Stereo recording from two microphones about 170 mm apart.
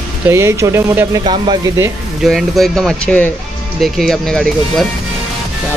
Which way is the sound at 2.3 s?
Centre (ahead or behind).